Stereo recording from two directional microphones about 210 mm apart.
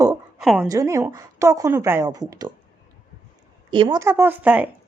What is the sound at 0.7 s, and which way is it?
A woman's voice, 15° right (ahead or behind).